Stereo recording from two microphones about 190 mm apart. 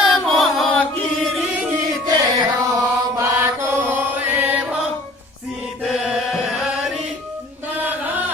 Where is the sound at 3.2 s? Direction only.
15° right (ahead or behind).